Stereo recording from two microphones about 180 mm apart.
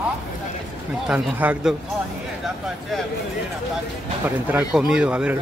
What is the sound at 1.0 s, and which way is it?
Speech, 5° right (ahead or behind).